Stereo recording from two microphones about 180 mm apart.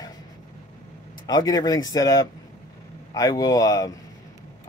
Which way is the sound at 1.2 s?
20° left (ahead or behind).